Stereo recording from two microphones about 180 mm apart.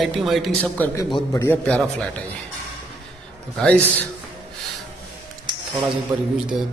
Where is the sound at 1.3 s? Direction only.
15° left (ahead or behind).